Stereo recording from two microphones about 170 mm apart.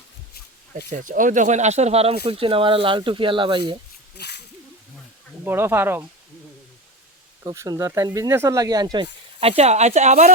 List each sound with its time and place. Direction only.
0.9 s speech: 50° right (ahead or behind); by 3.6 s 30° right (ahead or behind)
4.2 s speech: 75° left (ahead or behind)
5.5 s speech: 15° right (ahead or behind)
7.4 s speech: 20° right (ahead or behind); by 10.3 s 45° right (ahead or behind)